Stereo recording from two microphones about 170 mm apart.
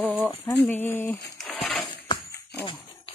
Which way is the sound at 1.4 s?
5° left (ahead or behind).